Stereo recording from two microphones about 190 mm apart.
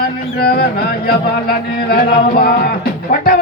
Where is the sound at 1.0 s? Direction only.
55° left (ahead or behind).